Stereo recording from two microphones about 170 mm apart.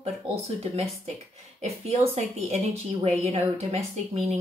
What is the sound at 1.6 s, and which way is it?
Speech, 40° right (ahead or behind).